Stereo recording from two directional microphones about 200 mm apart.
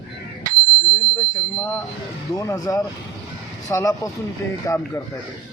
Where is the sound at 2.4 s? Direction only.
15° left (ahead or behind).